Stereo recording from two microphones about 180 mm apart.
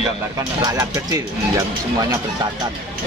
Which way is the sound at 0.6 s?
20° right (ahead or behind).